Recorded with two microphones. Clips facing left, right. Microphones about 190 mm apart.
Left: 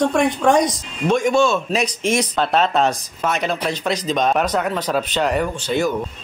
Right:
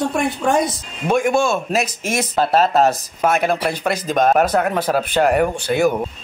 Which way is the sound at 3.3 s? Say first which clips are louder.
Right 3 dB; 50° right (ahead or behind).